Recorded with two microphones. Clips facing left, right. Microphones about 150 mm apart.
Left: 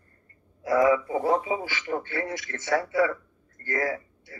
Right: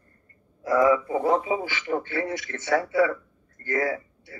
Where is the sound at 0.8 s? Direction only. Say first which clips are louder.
Right 1 dB; 30° right (ahead or behind).